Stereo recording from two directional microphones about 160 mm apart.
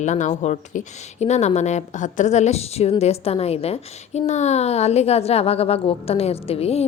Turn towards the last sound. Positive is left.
turn(degrees=40)  # may be behind; listen again after turning